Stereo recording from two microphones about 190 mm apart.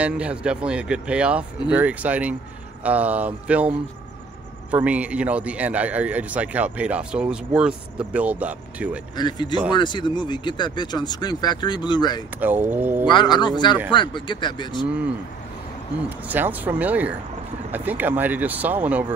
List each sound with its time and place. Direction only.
0.0 s a man's voice: 5° right (ahead or behind)
9.1 s speech: 25° left (ahead or behind)
12.4 s a man's voice: 10° right (ahead or behind)
13.0 s speech: 25° left (ahead or behind)
16.3 s a man's voice: 10° right (ahead or behind)